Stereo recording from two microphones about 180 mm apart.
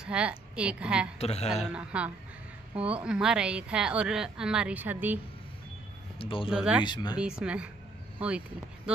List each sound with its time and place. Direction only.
0.0 s a woman's voice: 5° right (ahead or behind)
1.1 s a woman's voice: 35° left (ahead or behind)
1.7 s a woman's voice: 5° right (ahead or behind)
6.1 s speech: 30° left (ahead or behind)
6.5 s a woman's voice: 5° right (ahead or behind)
6.8 s speech: 25° left (ahead or behind)
7.2 s a woman's voice: 5° right (ahead or behind)